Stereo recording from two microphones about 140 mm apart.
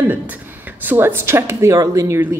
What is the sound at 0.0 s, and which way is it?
Speech, 15° right (ahead or behind).